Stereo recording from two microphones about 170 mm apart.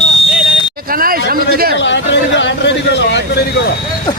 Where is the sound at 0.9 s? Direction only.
60° right (ahead or behind).